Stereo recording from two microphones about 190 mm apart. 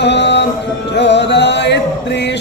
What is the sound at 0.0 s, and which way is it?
Music, 65° left (ahead or behind).